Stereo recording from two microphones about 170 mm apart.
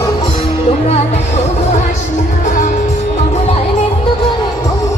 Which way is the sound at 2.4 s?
45° left (ahead or behind).